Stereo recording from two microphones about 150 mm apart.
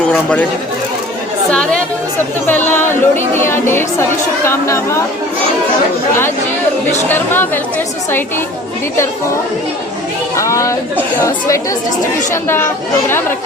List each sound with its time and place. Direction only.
0.0 s speech: 10° left (ahead or behind)
2.5 s a woman's voice: 15° left (ahead or behind)
7.1 s a woman's voice: 15° left (ahead or behind)
10.3 s a sound: 20° left (ahead or behind)
11.2 s a woman's voice: 20° left (ahead or behind)